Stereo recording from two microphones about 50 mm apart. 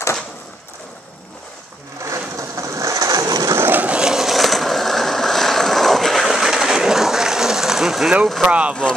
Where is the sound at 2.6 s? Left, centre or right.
Right.